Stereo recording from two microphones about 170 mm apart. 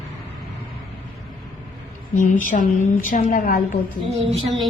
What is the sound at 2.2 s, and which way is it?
A woman's voice, 50° left (ahead or behind).